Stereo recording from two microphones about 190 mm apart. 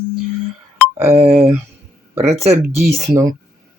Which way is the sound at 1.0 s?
35° right (ahead or behind).